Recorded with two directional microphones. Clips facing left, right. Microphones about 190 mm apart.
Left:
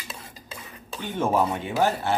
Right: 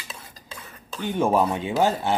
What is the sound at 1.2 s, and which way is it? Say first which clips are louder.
Speech: right 2 dB; 15° right (ahead or behind).